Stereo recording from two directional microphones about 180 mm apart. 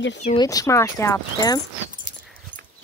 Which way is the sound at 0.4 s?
20° left (ahead or behind).